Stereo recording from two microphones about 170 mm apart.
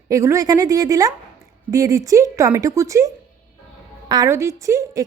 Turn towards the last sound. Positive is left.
turn(degrees=-20)  # may be behind; listen again after turning